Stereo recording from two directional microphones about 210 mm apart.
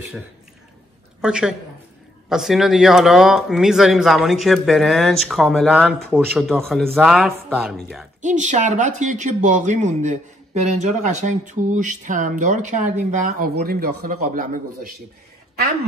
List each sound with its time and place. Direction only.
1.2 s speech: 5° right (ahead or behind)
8.2 s speech: 35° right (ahead or behind)